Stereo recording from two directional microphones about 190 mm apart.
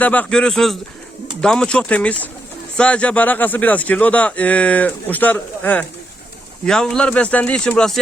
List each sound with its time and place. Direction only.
0.0 s a man's voice: 10° left (ahead or behind)